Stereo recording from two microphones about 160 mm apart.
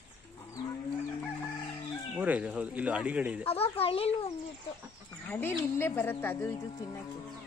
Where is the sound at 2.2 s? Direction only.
10° right (ahead or behind).